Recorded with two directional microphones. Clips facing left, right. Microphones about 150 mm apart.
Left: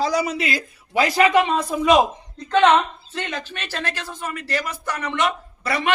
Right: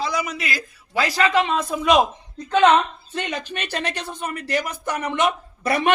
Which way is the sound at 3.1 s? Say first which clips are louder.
Right 2 dB; 15° right (ahead or behind).